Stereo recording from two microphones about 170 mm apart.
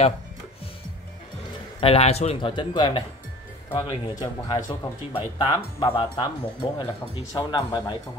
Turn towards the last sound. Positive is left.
turn(degrees=25)  # may be behind; listen again after turning